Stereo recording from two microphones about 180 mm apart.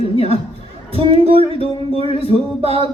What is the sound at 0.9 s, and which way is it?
Music, 35° right (ahead or behind).